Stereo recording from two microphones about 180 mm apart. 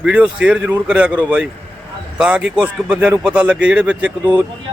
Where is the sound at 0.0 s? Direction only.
5° right (ahead or behind).